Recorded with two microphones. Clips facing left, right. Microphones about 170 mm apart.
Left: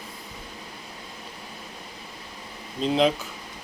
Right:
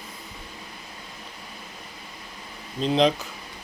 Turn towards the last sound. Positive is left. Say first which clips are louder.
# right 1 dB
turn(degrees=5)  # may be behind; listen again after turning